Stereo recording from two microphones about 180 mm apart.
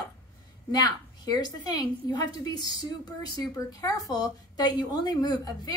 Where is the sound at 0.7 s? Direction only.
20° left (ahead or behind).